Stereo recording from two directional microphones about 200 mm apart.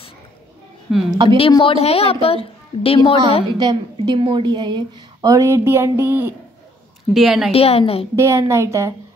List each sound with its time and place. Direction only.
0.9 s a woman's voice: centre (ahead or behind)
1.5 s a woman's voice: 25° left (ahead or behind)
3.4 s a woman's voice: 20° right (ahead or behind); by 7.5 s centre (ahead or behind)
7.5 s a woman's voice: 30° left (ahead or behind)
8.2 s a woman's voice: 15° right (ahead or behind)